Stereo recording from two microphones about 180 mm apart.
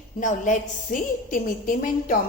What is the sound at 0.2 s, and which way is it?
A woman's voice, 45° left (ahead or behind).